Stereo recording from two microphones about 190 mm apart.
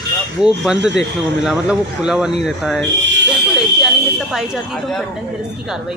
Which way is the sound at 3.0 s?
70° right (ahead or behind).